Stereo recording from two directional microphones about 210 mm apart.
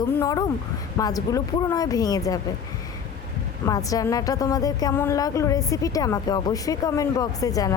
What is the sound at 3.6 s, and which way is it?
A woman's voice, 15° left (ahead or behind).